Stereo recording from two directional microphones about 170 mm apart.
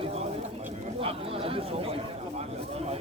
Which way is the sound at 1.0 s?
35° right (ahead or behind).